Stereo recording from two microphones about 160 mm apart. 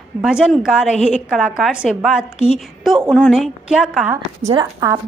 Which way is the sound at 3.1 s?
Centre (ahead or behind).